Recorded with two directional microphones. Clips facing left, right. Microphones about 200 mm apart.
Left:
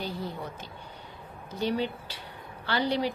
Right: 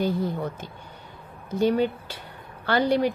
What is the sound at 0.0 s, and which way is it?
Speech, 50° right (ahead or behind).